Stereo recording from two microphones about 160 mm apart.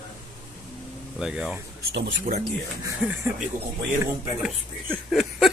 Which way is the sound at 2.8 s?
20° right (ahead or behind).